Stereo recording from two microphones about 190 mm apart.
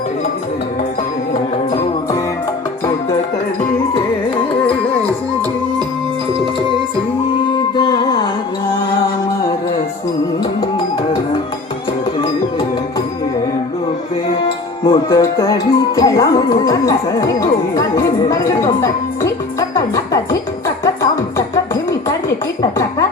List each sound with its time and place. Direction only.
4.6 s carnatic music: 5° left (ahead or behind)
7.8 s music: 20° left (ahead or behind)
10.6 s music: 20° left (ahead or behind)
14.8 s music: 25° left (ahead or behind)
15.2 s music: 15° left (ahead or behind)